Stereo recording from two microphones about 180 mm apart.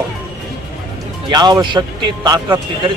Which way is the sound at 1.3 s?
25° right (ahead or behind).